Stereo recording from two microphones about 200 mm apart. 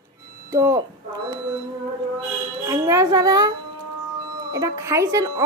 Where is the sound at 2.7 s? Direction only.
15° right (ahead or behind).